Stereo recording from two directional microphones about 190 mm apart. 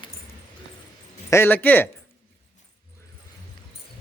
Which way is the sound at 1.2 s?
10° left (ahead or behind).